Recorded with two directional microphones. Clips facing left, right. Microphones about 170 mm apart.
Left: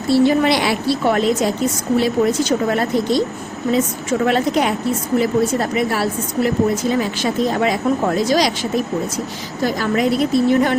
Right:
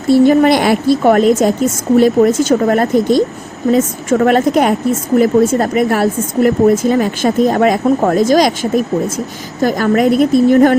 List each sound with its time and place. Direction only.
0.1 s a woman's voice: 50° right (ahead or behind)